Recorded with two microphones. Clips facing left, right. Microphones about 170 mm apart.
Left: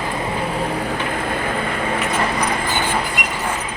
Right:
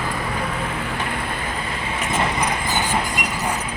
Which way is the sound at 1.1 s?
50° left (ahead or behind).